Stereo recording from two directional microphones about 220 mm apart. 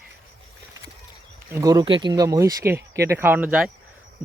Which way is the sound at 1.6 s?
20° right (ahead or behind).